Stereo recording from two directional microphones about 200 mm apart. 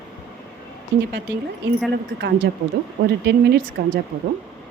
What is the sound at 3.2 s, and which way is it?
Speech, 55° right (ahead or behind).